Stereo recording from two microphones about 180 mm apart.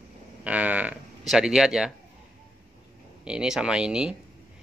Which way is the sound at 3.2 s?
5° right (ahead or behind).